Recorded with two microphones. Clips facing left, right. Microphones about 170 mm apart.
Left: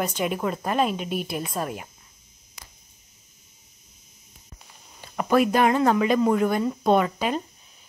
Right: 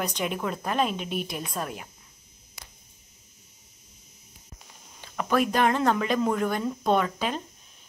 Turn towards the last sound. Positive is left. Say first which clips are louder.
# left 4 dB
turn(degrees=10)  # may be behind; listen again after turning